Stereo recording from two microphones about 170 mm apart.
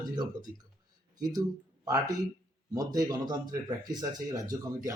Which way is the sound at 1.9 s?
20° right (ahead or behind).